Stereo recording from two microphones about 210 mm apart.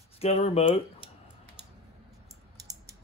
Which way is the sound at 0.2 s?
30° left (ahead or behind).